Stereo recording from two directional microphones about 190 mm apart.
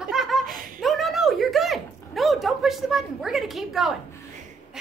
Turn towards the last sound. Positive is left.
turn(degrees=0)  # may be behind; listen again after turning